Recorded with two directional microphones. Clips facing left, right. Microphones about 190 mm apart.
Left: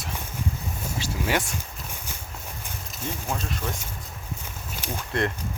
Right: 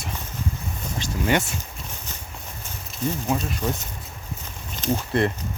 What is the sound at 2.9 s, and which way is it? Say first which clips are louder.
Speech: right 7 dB; 5° right (ahead or behind).